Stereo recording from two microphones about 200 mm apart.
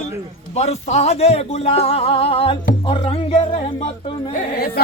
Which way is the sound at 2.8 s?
30° left (ahead or behind).